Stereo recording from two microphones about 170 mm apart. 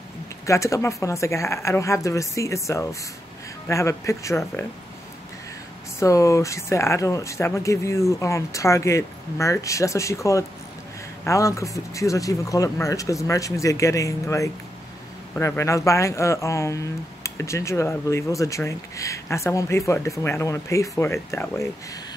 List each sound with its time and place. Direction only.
0.5 s speech: 20° left (ahead or behind)
5.9 s speech: 20° left (ahead or behind)